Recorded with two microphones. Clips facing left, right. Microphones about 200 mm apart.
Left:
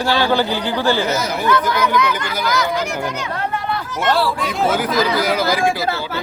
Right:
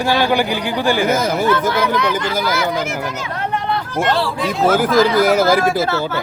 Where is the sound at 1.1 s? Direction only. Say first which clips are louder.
Right 3 dB; 50° right (ahead or behind).